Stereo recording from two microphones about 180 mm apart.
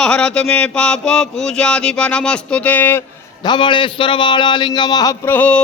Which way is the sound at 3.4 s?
25° left (ahead or behind).